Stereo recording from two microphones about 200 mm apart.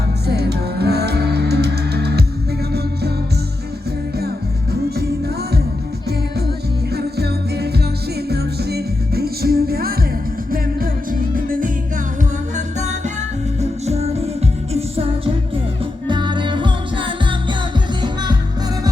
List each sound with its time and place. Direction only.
0.3 s music: 55° right (ahead or behind)
4.9 s music: 50° right (ahead or behind)
6.9 s music: 55° right (ahead or behind); by 18.3 s 20° right (ahead or behind)